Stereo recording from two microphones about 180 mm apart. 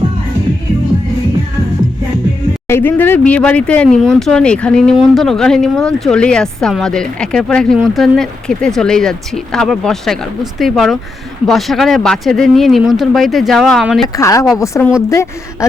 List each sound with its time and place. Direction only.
2.6 s speech: 10° left (ahead or behind)
14.2 s a woman's voice: 15° left (ahead or behind)